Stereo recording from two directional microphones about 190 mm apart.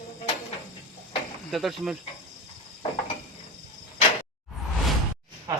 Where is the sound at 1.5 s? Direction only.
Centre (ahead or behind).